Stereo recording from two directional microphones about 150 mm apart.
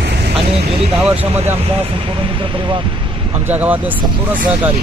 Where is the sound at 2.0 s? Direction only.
35° right (ahead or behind).